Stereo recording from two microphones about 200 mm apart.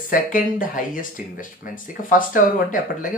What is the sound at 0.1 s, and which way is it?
Speech, 40° left (ahead or behind).